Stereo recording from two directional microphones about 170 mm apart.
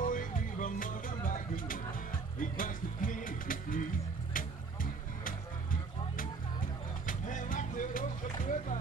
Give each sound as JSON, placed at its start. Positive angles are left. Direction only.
{"t": 0.0, "sound": "music", "side_deg": 50}
{"t": 5.2, "sound": "music", "side_deg": 55}